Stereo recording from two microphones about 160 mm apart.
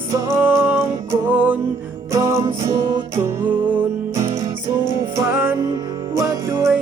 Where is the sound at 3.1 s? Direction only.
10° right (ahead or behind).